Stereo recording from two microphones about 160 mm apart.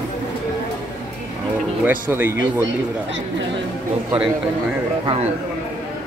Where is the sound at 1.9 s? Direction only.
15° right (ahead or behind).